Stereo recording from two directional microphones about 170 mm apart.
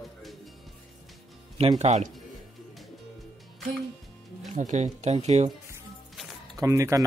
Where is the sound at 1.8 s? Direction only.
40° right (ahead or behind).